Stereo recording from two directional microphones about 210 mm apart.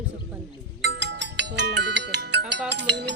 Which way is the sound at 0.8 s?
55° right (ahead or behind).